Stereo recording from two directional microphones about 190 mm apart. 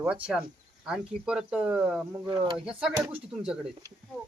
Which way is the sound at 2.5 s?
5° right (ahead or behind).